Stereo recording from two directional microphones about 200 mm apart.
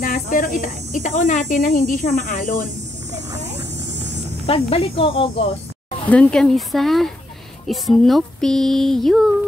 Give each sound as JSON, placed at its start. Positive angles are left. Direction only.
{"t": 0.0, "sound": "speech", "side_deg": 45}
{"t": 4.5, "sound": "speech", "side_deg": 30}
{"t": 6.0, "sound": "music", "side_deg": 5}